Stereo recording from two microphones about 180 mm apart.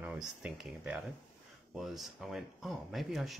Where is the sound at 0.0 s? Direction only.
5° right (ahead or behind).